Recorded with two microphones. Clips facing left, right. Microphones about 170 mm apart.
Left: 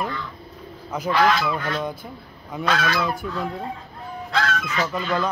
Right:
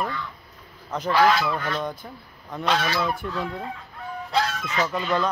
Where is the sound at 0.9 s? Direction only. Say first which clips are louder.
Even; centre (ahead or behind).